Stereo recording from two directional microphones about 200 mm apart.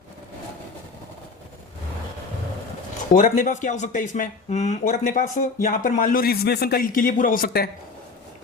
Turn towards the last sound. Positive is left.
turn(degrees=50)  # may be behind; listen again after turning